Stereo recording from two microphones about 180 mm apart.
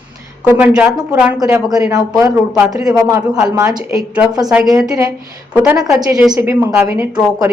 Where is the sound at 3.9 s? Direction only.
5° right (ahead or behind).